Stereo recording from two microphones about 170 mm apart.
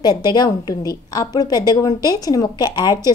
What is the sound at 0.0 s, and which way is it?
A woman's voice, 25° left (ahead or behind).